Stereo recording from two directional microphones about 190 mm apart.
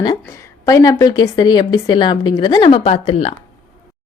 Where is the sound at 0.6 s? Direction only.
15° left (ahead or behind).